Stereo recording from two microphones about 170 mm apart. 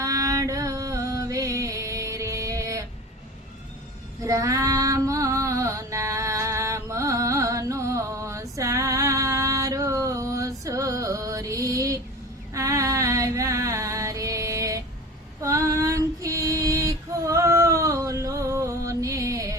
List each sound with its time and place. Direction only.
0.0 s music: 20° right (ahead or behind)
4.2 s female singing: 20° right (ahead or behind)
12.5 s music: 20° right (ahead or behind)
15.4 s female singing: 20° right (ahead or behind)